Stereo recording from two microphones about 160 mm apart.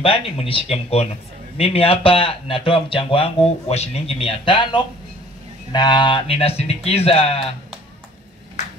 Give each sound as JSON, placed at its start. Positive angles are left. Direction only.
{"t": 0.0, "sound": "speech", "side_deg": 35}